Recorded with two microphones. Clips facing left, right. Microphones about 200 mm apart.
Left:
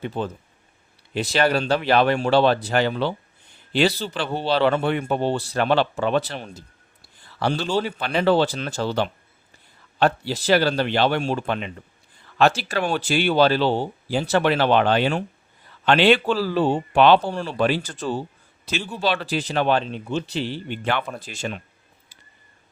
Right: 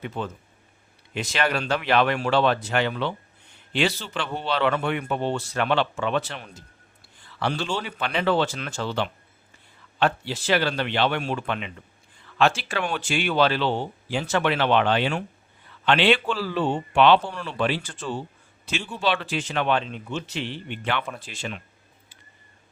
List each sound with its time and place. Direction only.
0.0 s speech: 35° left (ahead or behind)
18.8 s speech: 5° left (ahead or behind)
19.0 s speech: 40° left (ahead or behind)